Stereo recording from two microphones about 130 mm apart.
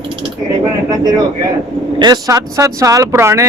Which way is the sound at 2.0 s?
30° right (ahead or behind).